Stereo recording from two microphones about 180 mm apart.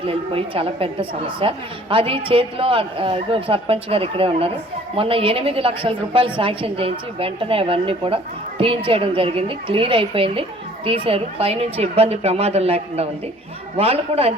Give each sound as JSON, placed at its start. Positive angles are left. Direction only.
{"t": 0.0, "sound": "a woman's voice", "side_deg": -30}